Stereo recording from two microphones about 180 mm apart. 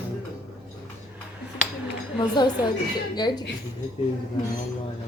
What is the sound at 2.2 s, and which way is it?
Speech, 25° left (ahead or behind).